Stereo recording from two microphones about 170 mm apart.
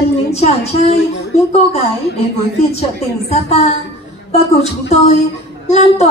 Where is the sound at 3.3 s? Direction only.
35° left (ahead or behind).